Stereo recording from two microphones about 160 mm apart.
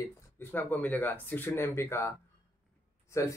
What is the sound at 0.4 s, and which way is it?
A man's voice, 10° left (ahead or behind).